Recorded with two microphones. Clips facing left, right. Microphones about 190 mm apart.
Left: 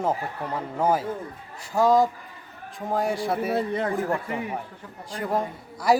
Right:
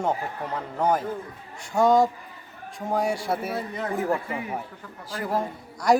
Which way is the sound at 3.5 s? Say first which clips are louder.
Left 5 dB; 55° left (ahead or behind).